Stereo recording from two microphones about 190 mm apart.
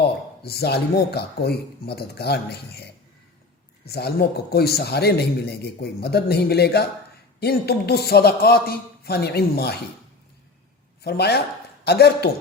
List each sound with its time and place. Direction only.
0.4 s a man's voice: 55° left (ahead or behind)
11.0 s a man's voice: 55° left (ahead or behind)